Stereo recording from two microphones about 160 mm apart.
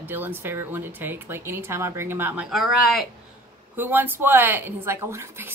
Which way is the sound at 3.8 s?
10° right (ahead or behind).